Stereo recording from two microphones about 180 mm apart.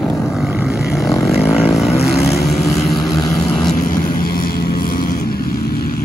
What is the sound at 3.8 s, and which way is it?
Vehicle, 50° left (ahead or behind).